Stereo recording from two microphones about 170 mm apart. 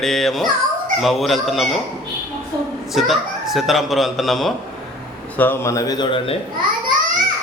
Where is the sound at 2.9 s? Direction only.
Centre (ahead or behind).